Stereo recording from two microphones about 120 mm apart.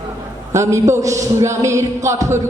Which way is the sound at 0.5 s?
25° right (ahead or behind).